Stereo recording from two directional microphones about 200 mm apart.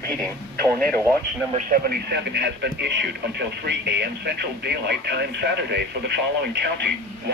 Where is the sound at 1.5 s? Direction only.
45° right (ahead or behind).